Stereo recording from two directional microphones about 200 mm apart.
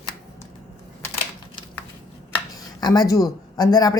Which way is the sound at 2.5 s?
20° left (ahead or behind).